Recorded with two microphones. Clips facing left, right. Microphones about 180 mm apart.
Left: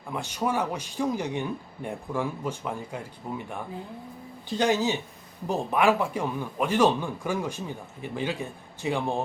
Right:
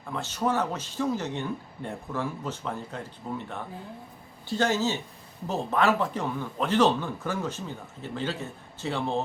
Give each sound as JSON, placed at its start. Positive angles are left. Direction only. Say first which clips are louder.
{"t": 0.1, "sound": "speech", "louder": "even", "side_deg": 15}